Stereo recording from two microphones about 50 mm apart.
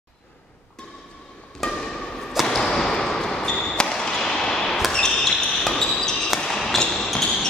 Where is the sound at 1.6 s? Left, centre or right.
Centre.